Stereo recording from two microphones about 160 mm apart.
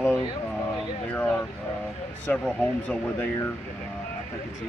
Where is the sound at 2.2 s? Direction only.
5° left (ahead or behind).